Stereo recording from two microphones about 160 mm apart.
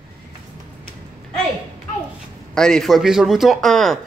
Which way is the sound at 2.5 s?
5° left (ahead or behind).